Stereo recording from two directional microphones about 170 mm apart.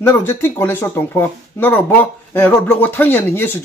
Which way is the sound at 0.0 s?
15° left (ahead or behind).